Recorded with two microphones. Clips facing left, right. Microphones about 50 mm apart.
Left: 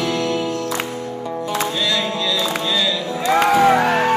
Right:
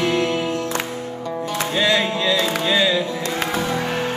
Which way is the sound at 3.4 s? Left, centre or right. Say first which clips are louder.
Left 11 dB; left.